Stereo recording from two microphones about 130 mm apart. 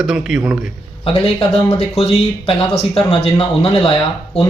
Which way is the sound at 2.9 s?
45° left (ahead or behind).